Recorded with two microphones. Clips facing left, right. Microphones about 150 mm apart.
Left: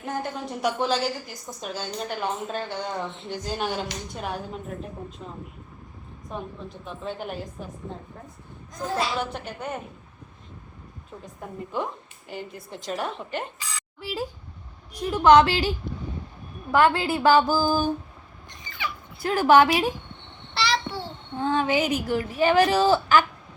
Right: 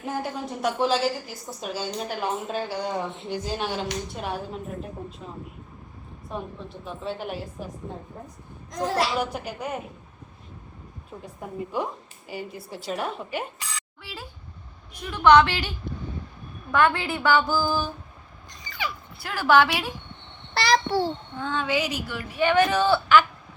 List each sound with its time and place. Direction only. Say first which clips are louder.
0.0 s a woman's voice: even; 5° right (ahead or behind)
6.8 s a woman's voice: right 1 dB; centre (ahead or behind)
8.7 s a child's voice: right 3 dB; 75° right (ahead or behind)
9.1 s a woman's voice: right 2 dB; 5° right (ahead or behind)
11.3 s a woman's voice: right 1 dB; 10° right (ahead or behind)
14.9 s a woman's voice: left 1 dB; 35° left (ahead or behind)
16.7 s a woman's voice: left 2 dB; 35° left (ahead or behind)
19.2 s speech: left 3 dB; 45° left (ahead or behind)
20.5 s a sound: right 5 dB; 45° right (ahead or behind)
21.3 s a woman's voice: left 5 dB; 35° left (ahead or behind)